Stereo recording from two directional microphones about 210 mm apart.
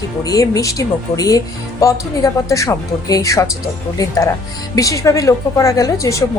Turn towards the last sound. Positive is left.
turn(degrees=15)  # may be behind; listen again after turning